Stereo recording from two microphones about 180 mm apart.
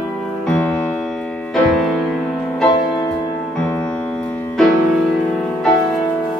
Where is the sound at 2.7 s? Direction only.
25° left (ahead or behind).